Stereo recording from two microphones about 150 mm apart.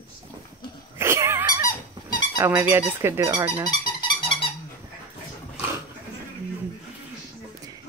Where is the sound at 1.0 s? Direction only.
15° right (ahead or behind).